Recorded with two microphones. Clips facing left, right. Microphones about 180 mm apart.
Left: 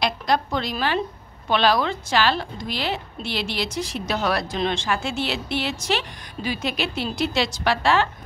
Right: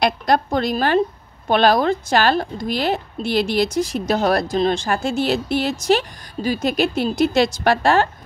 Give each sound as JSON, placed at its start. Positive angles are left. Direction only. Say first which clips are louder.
{"t": 0.0, "sound": "a woman's voice", "louder": "right 5 dB", "side_deg": -50}